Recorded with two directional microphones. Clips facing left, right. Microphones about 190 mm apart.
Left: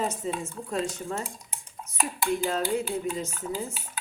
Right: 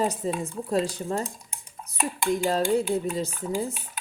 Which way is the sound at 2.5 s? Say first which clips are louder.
Right 4 dB; 35° right (ahead or behind).